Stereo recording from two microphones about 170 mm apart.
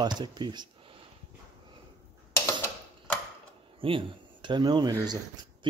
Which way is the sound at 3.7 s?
30° right (ahead or behind).